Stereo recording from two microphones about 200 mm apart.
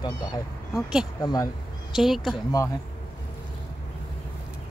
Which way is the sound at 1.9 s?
Centre (ahead or behind).